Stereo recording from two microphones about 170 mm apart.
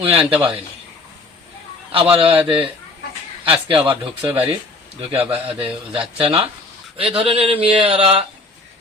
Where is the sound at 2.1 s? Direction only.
30° right (ahead or behind).